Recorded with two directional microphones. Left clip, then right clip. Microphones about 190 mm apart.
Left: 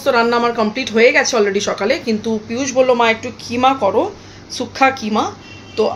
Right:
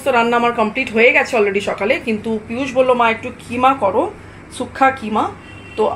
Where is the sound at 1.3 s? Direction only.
15° left (ahead or behind).